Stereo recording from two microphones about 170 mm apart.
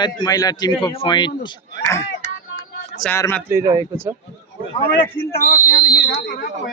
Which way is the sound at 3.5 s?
15° right (ahead or behind).